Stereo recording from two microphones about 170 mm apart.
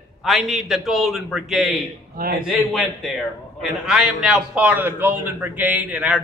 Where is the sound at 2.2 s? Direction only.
60° right (ahead or behind).